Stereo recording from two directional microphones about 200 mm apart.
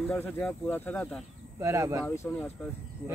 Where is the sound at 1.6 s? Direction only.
15° right (ahead or behind).